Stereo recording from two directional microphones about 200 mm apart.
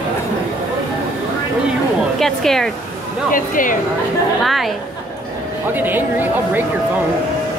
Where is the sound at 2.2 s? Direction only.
Centre (ahead or behind).